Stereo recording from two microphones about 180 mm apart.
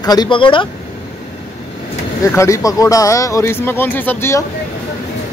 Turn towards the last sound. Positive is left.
turn(degrees=15)  # may be behind; listen again after turning